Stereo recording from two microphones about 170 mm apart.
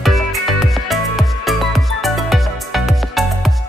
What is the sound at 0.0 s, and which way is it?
Music, centre (ahead or behind).